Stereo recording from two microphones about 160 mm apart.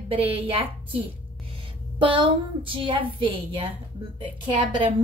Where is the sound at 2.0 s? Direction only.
30° right (ahead or behind).